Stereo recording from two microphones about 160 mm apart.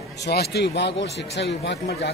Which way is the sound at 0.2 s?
90° left.